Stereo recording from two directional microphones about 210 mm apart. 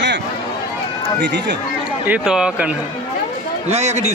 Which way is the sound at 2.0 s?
5° right (ahead or behind).